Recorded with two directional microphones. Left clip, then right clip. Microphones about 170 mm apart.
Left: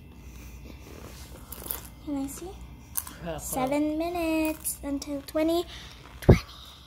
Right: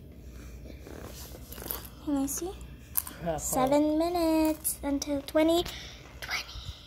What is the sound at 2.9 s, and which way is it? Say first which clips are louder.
Speech: right 3 dB; 20° right (ahead or behind).